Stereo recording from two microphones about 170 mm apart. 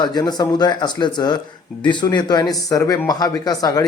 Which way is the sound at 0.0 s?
25° left (ahead or behind).